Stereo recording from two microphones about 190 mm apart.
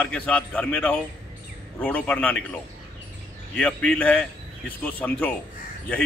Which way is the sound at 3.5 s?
5° left (ahead or behind).